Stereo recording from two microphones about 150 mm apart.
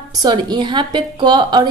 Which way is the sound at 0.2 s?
30° right (ahead or behind).